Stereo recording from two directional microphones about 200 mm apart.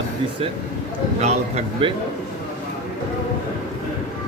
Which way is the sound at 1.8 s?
25° right (ahead or behind).